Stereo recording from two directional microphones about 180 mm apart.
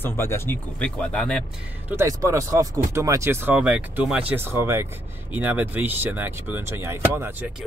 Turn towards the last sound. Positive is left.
turn(degrees=-10)  # may be behind; listen again after turning